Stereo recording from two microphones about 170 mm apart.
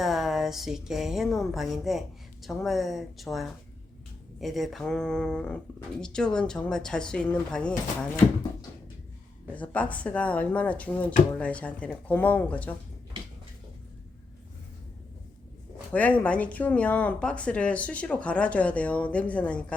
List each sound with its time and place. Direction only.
0.0 s a woman's voice: centre (ahead or behind)
9.6 s speech: 10° left (ahead or behind)
15.9 s speech: 10° left (ahead or behind)